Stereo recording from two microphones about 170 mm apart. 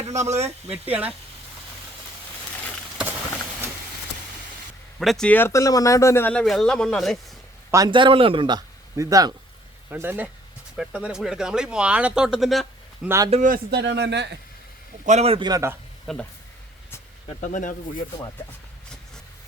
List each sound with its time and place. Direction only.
0.3 s speech: 40° right (ahead or behind)
4.9 s speech: centre (ahead or behind)
7.7 s speech: 25° right (ahead or behind); by 13.1 s centre (ahead or behind)
13.1 s a man's voice: 20° right (ahead or behind)
13.3 s a man's voice: 50° right (ahead or behind)
13.7 s speech: 85° right
15.0 s speech: 40° right (ahead or behind); by 15.7 s 20° right (ahead or behind)
16.1 s speech: centre (ahead or behind)
17.4 s speech: 50° left (ahead or behind)